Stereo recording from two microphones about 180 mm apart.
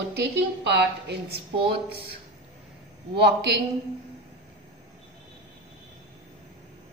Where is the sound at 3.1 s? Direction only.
70° right (ahead or behind).